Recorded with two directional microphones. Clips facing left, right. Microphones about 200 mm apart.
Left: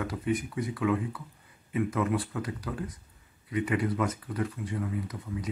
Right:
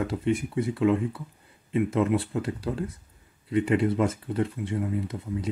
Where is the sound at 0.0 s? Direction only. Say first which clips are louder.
Right 4 dB; 25° right (ahead or behind).